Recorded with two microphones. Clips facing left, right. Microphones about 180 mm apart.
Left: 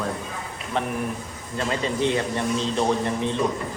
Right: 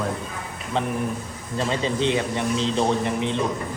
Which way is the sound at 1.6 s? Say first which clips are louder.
Even; 25° right (ahead or behind).